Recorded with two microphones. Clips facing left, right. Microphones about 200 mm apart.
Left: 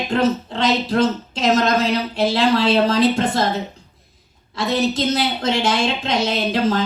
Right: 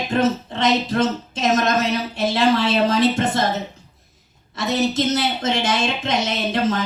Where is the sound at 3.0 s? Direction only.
20° right (ahead or behind).